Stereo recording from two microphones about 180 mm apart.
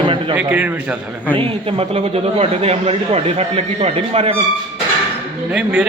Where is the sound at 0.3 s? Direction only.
10° right (ahead or behind).